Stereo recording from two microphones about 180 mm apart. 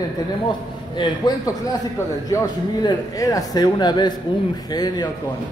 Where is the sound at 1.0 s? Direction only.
25° left (ahead or behind).